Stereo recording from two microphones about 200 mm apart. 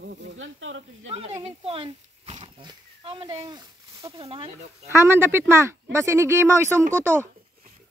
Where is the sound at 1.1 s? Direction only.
30° right (ahead or behind).